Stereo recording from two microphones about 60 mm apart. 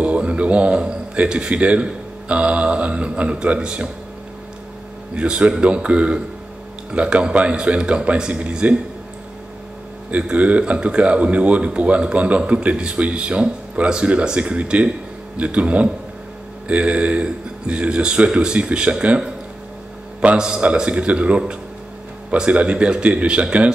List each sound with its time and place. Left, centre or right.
0.0 s a man's voice: right
5.1 s speech: centre
10.1 s speech: right